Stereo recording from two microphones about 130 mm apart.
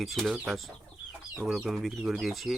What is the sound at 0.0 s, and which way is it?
Speech, centre (ahead or behind).